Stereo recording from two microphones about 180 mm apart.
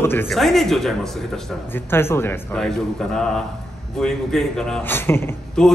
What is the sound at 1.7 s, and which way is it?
Speech, 10° left (ahead or behind).